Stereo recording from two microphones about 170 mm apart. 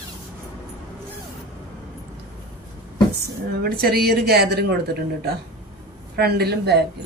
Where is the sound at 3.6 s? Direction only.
65° right (ahead or behind).